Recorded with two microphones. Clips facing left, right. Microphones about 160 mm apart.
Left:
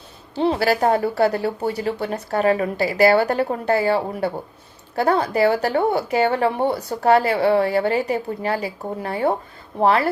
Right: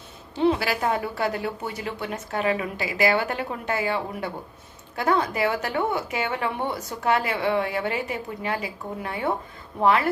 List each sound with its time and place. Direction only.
0.3 s speech: 35° left (ahead or behind)